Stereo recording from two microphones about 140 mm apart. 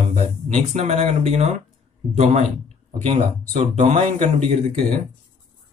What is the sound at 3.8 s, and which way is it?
Speech, 50° right (ahead or behind).